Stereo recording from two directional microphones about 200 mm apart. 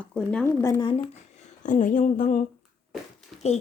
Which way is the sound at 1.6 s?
40° left (ahead or behind).